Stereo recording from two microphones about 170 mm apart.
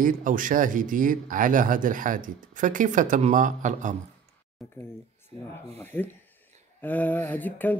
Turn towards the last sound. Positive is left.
turn(degrees=10)  # may be behind; listen again after turning